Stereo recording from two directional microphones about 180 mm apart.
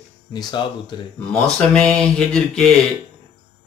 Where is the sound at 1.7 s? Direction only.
5° left (ahead or behind).